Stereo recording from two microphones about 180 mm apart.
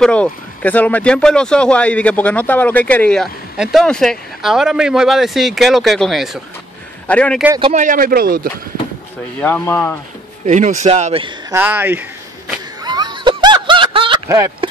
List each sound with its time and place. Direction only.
0.0 s speech: 5° left (ahead or behind)
7.7 s speech: 45° right (ahead or behind)
9.4 s speech: 10° left (ahead or behind)
10.4 s speech: 40° right (ahead or behind)
11.5 s speech: 10° right (ahead or behind)
12.8 s snicker: 25° right (ahead or behind)